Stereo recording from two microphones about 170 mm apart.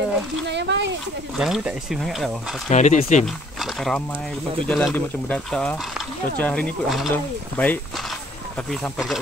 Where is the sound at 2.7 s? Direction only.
45° left (ahead or behind).